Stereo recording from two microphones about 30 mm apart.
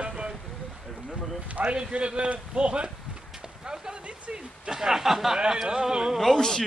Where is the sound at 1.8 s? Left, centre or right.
Right.